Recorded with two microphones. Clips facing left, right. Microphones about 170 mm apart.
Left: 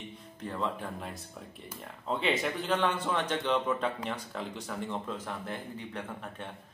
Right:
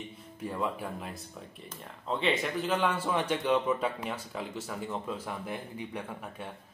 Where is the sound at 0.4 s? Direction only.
10° right (ahead or behind).